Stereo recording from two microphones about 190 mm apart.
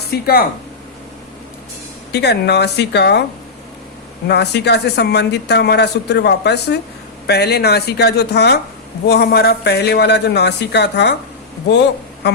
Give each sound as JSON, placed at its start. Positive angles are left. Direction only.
{"t": 0.1, "sound": "speech", "side_deg": 55}
{"t": 2.1, "sound": "speech", "side_deg": 60}
{"t": 4.3, "sound": "speech", "side_deg": 60}
{"t": 12.2, "sound": "speech", "side_deg": 60}